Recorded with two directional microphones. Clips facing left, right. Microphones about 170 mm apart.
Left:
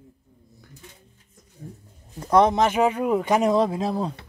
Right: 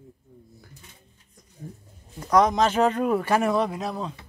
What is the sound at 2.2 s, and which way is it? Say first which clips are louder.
Speech: left 2 dB; 25° left (ahead or behind).